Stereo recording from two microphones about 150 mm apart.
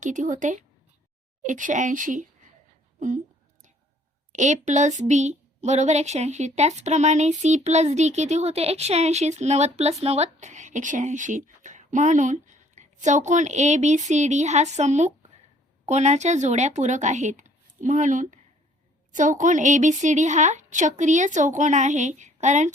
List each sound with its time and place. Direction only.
0.0 s a woman's voice: 55° right (ahead or behind)
4.3 s a woman's voice: 55° right (ahead or behind)